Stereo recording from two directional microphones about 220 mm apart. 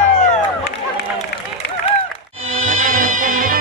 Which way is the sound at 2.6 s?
30° right (ahead or behind).